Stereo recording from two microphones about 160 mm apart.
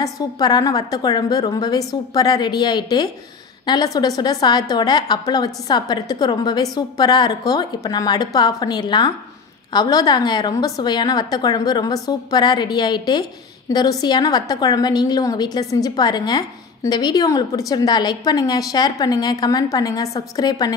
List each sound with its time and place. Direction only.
0.0 s a woman's voice: 25° left (ahead or behind)